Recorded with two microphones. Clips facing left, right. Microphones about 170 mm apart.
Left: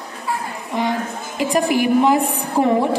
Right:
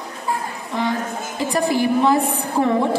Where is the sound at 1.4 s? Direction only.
20° left (ahead or behind).